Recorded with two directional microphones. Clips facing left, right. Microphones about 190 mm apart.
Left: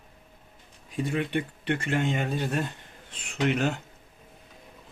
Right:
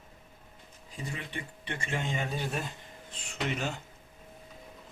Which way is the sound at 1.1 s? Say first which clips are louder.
Left 12 dB; 65° left (ahead or behind).